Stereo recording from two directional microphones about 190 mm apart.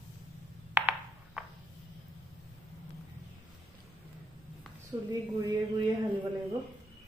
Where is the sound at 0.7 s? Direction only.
5° right (ahead or behind).